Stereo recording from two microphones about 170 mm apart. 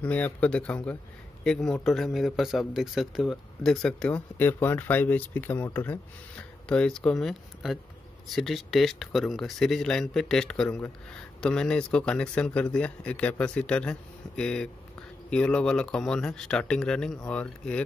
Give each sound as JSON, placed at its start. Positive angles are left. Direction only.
{"t": 0.0, "sound": "speech", "side_deg": 10}